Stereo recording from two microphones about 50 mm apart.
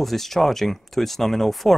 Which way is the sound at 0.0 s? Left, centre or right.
Centre.